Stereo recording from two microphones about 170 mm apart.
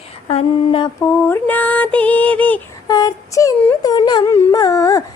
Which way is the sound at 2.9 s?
20° left (ahead or behind).